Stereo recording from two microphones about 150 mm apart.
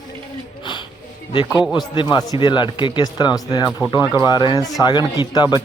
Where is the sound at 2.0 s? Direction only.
25° left (ahead or behind).